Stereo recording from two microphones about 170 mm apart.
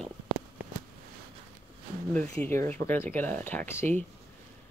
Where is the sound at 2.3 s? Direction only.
15° left (ahead or behind).